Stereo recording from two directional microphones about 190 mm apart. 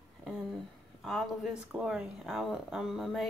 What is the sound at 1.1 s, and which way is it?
Speech, centre (ahead or behind).